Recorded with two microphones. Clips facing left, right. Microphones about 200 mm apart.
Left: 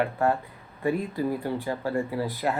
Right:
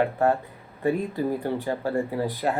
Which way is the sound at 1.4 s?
45° right (ahead or behind).